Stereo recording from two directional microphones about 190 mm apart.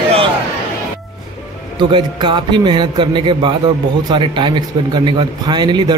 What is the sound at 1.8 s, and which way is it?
Speech, 25° right (ahead or behind).